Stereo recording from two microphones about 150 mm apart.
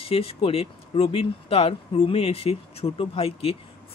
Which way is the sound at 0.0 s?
40° left (ahead or behind).